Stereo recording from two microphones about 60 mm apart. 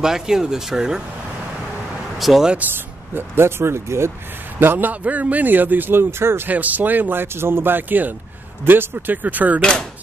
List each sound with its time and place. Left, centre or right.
0.0 s speech: centre
2.1 s speech: centre
2.6 s speech: right
3.2 s speech: right
4.6 s a man's voice: right
6.5 s a man's voice: right
9.6 s speech: centre